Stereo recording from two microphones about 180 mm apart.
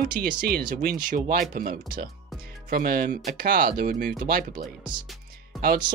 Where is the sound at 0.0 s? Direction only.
50° right (ahead or behind).